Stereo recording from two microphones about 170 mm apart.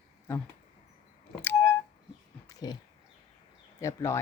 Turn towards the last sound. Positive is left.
turn(degrees=15)  # may be behind; listen again after turning